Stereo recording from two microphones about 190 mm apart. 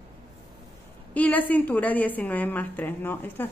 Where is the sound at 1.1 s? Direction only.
10° left (ahead or behind).